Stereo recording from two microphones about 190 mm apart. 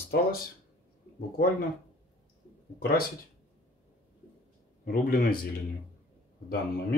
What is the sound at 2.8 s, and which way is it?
Speech, 55° left (ahead or behind).